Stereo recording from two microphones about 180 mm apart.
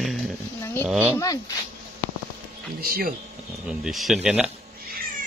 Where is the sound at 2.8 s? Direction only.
55° right (ahead or behind).